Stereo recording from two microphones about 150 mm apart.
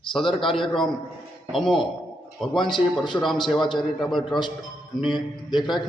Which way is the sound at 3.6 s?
30° left (ahead or behind).